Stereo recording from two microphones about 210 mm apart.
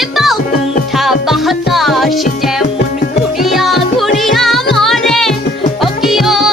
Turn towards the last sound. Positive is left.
turn(degrees=0)  # may be behind; listen again after turning